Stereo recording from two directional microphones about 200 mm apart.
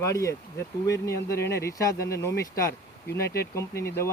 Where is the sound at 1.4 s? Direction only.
15° left (ahead or behind).